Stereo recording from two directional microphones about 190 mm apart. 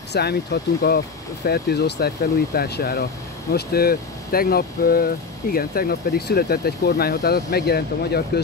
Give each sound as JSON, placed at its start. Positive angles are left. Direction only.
{"t": 0.1, "sound": "speech", "side_deg": 60}